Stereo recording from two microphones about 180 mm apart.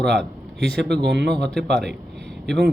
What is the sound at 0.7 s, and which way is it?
Speech, 70° right (ahead or behind).